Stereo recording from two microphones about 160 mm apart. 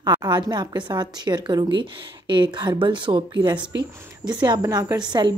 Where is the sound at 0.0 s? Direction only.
25° right (ahead or behind).